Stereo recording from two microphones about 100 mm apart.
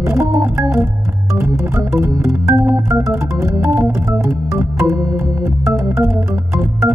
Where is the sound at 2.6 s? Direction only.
30° right (ahead or behind).